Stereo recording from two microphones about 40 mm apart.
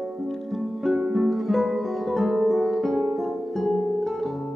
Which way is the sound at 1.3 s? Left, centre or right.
Centre.